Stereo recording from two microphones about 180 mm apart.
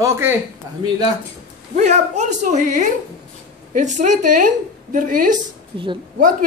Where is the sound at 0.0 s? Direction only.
15° right (ahead or behind).